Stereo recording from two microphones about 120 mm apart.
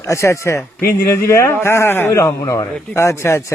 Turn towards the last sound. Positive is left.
turn(degrees=25)  # may be behind; listen again after turning